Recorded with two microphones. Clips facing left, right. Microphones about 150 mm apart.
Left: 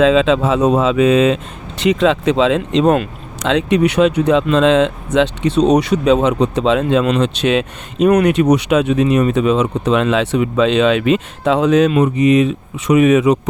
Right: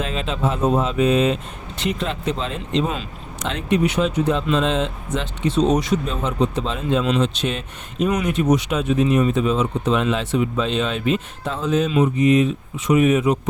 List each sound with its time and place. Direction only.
0.0 s speech: 90° left